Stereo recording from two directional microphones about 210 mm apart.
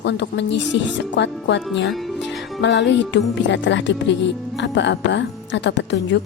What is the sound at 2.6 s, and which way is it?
A woman's voice, 55° left (ahead or behind).